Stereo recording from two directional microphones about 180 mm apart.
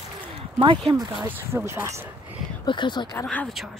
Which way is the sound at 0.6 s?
25° right (ahead or behind).